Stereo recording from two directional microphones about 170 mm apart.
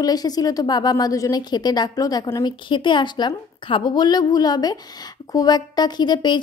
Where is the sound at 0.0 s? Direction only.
20° left (ahead or behind).